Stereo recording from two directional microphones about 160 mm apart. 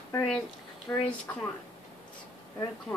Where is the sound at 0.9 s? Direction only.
20° left (ahead or behind).